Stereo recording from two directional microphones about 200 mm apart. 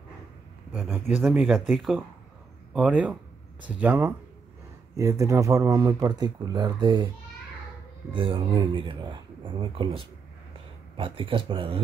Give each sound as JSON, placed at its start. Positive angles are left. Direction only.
{"t": 0.7, "sound": "speech", "side_deg": -10}
{"t": 8.1, "sound": "speech", "side_deg": -25}